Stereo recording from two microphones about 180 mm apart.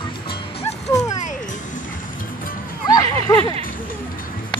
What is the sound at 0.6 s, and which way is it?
Music, 20° left (ahead or behind).